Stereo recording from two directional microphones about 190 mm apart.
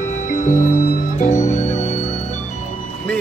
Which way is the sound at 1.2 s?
40° left (ahead or behind).